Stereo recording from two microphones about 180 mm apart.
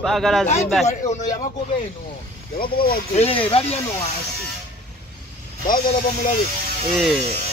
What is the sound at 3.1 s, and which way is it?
Speech, 30° left (ahead or behind).